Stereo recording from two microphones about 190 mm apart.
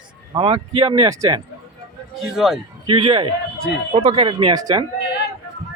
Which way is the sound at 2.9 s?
25° right (ahead or behind).